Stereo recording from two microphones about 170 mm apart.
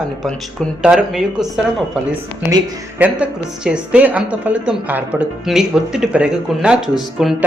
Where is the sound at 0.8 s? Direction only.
5° right (ahead or behind).